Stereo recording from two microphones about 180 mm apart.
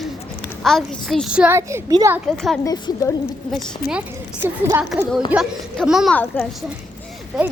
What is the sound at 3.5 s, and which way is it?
Speech, centre (ahead or behind).